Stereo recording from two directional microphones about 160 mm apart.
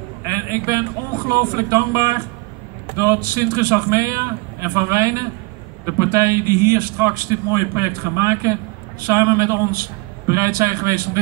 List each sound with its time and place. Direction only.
0.3 s a man's voice: 20° right (ahead or behind)